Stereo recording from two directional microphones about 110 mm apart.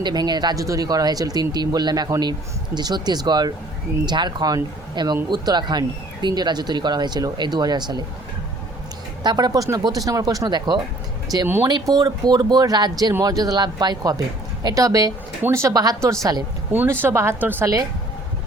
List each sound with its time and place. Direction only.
0.0 s speech: 40° right (ahead or behind)
9.2 s speech: 40° right (ahead or behind)
15.4 s speech: 25° right (ahead or behind)
16.7 s speech: 20° right (ahead or behind)